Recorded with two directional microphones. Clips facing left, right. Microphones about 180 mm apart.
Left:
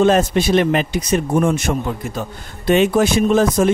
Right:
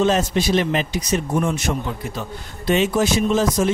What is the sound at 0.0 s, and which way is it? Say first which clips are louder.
A man's voice: left 4 dB; 55° left (ahead or behind).